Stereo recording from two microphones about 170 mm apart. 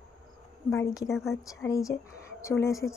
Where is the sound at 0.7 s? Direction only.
15° left (ahead or behind).